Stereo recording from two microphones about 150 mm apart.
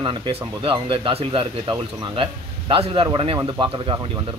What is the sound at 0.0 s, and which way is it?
Speech, 30° right (ahead or behind).